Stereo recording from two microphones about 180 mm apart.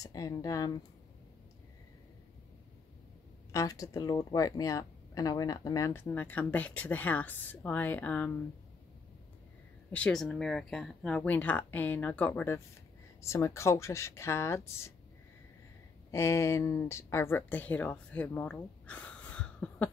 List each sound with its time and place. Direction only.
0.0 s speech: 20° left (ahead or behind)
3.5 s speech: 20° left (ahead or behind)
9.9 s speech: 5° left (ahead or behind)
16.1 s speech: 15° left (ahead or behind)